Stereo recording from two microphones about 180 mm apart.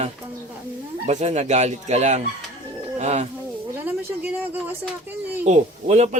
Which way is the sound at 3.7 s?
10° right (ahead or behind).